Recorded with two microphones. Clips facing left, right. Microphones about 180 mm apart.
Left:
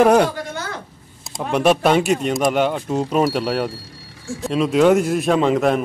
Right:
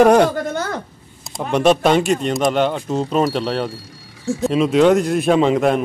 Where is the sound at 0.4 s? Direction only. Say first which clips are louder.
Right 6 dB; 50° right (ahead or behind).